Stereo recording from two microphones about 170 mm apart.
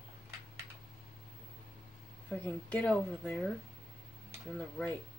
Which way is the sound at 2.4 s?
10° left (ahead or behind).